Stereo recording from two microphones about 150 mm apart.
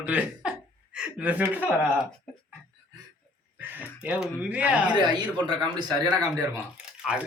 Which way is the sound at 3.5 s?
10° right (ahead or behind).